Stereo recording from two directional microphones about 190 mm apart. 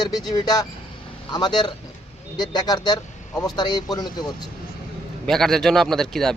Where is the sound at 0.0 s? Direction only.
20° left (ahead or behind).